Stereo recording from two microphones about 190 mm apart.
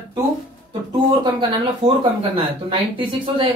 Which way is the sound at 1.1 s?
25° right (ahead or behind).